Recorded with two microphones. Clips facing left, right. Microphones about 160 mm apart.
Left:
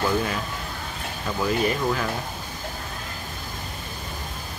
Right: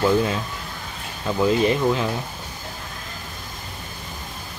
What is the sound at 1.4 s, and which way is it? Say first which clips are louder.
Speech: right 5 dB; 20° right (ahead or behind).